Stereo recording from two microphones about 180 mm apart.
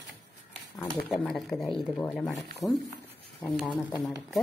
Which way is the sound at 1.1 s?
Centre (ahead or behind).